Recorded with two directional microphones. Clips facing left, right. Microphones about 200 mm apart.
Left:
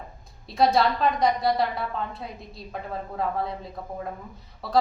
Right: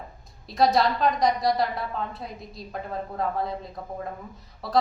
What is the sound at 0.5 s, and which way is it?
A woman's voice, centre (ahead or behind).